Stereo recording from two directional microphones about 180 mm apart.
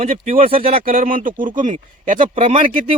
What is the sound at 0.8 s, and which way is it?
Speech, 50° right (ahead or behind).